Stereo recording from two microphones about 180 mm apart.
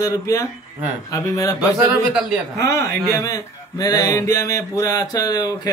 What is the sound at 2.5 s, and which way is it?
Mantra, 15° left (ahead or behind).